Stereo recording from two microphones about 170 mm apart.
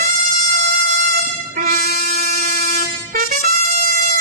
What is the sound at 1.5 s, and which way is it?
Brass instrument, 60° right (ahead or behind).